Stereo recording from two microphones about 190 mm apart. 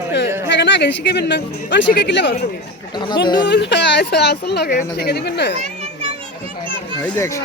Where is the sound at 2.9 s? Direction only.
25° left (ahead or behind).